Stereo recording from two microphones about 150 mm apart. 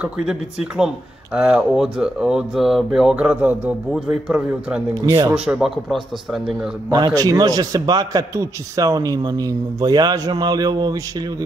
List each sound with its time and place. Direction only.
0.0 s speech: 5° right (ahead or behind)
6.9 s a man's voice: 25° right (ahead or behind)